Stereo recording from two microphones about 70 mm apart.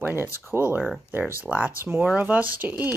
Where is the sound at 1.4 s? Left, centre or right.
Centre.